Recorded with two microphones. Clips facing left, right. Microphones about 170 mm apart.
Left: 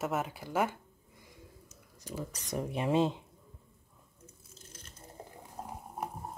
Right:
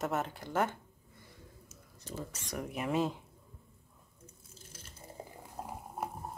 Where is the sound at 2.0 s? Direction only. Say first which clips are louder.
Left 2 dB; 10° left (ahead or behind).